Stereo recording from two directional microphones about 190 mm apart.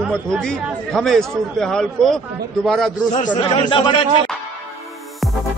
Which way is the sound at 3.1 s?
40° left (ahead or behind).